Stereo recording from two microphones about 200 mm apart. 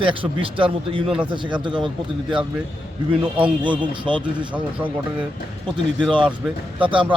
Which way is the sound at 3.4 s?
25° right (ahead or behind).